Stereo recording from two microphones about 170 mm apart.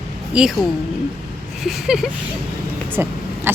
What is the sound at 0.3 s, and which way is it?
Speech, 5° right (ahead or behind).